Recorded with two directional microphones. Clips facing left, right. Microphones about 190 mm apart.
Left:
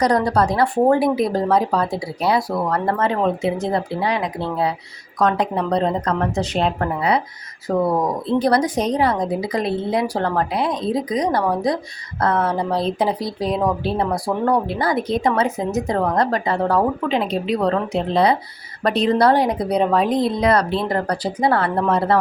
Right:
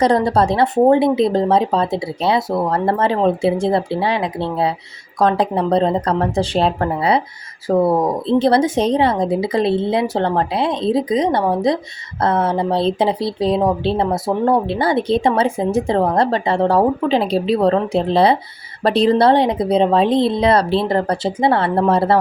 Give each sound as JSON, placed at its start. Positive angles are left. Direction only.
{"t": 0.0, "sound": "speech", "side_deg": -25}